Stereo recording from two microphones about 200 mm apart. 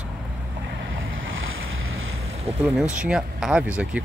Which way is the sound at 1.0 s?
80° right.